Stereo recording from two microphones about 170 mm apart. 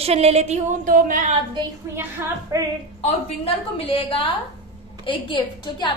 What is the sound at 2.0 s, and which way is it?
Speech, 15° right (ahead or behind).